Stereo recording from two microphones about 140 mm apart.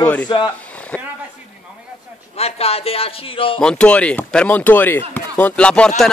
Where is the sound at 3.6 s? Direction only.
10° left (ahead or behind).